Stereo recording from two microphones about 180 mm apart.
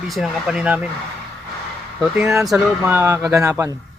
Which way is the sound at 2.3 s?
15° right (ahead or behind).